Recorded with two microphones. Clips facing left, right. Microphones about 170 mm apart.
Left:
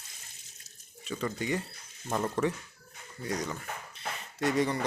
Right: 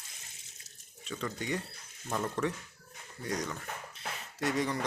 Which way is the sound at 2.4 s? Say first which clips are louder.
Left 4 dB; 15° left (ahead or behind).